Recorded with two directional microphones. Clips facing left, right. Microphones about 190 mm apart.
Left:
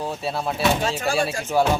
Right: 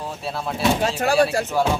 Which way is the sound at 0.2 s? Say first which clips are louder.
Left 2 dB; centre (ahead or behind).